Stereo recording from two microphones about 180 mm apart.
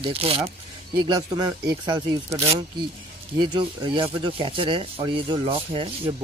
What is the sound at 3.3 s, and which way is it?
Speech, 25° right (ahead or behind).